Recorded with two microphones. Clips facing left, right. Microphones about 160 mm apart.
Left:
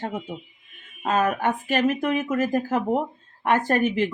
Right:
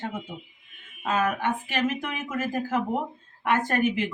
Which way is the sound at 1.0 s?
40° left (ahead or behind).